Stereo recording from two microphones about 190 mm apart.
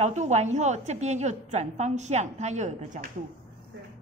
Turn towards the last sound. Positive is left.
turn(degrees=-40)  # may be behind; listen again after turning